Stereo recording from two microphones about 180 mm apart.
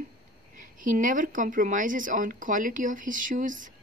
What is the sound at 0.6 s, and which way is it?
Speech, 45° right (ahead or behind).